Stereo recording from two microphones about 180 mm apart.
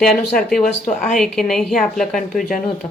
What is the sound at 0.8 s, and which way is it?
Speech, 45° left (ahead or behind).